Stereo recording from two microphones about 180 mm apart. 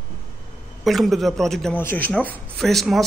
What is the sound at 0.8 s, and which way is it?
Speech, centre (ahead or behind).